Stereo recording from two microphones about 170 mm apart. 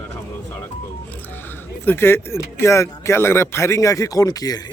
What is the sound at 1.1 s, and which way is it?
Speech, 10° left (ahead or behind).